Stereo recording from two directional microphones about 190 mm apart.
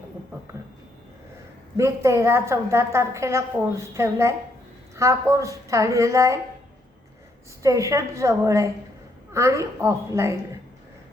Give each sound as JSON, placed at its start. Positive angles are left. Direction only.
{"t": 1.7, "sound": "a woman's voice", "side_deg": -15}
{"t": 7.6, "sound": "a woman's voice", "side_deg": -15}